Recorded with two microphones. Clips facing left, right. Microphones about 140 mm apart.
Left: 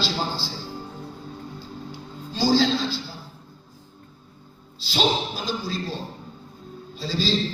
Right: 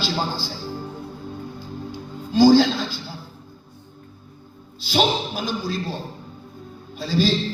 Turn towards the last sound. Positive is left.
turn(degrees=-50)  # may be behind; listen again after turning